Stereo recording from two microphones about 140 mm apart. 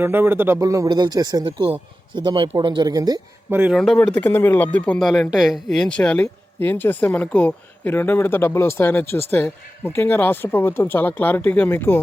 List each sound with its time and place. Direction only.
0.0 s speech: 15° right (ahead or behind)
3.5 s speech: 10° right (ahead or behind)
3.8 s speech: 5° left (ahead or behind)